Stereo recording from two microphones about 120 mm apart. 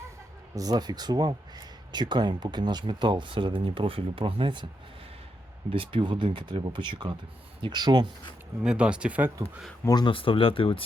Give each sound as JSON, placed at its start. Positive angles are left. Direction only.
{"t": 0.5, "sound": "speech", "side_deg": -30}
{"t": 5.7, "sound": "speech", "side_deg": -45}
{"t": 8.6, "sound": "speech", "side_deg": -10}
{"t": 9.8, "sound": "speech", "side_deg": 35}